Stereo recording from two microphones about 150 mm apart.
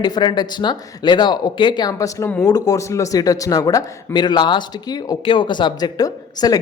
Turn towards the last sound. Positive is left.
turn(degrees=25)  # may be behind; listen again after turning